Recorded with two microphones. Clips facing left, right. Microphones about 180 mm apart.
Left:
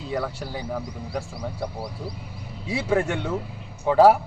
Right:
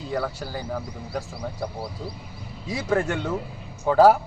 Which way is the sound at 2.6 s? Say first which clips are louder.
Left 1 dB; 10° left (ahead or behind).